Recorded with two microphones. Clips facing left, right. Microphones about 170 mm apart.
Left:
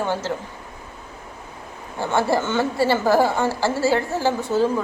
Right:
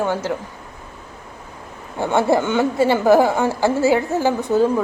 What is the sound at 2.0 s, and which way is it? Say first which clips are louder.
A woman's voice: right 4 dB; 20° right (ahead or behind).